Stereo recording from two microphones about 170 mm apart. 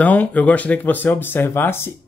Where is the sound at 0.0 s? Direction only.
10° left (ahead or behind).